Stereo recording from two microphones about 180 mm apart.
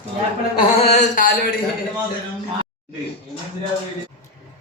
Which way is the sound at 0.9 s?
40° left (ahead or behind).